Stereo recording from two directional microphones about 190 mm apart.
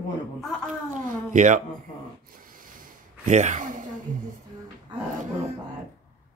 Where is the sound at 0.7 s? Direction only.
40° right (ahead or behind).